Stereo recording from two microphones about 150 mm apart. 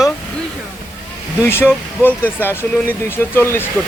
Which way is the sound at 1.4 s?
15° left (ahead or behind).